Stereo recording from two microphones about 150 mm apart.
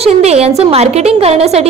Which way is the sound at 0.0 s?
45° right (ahead or behind).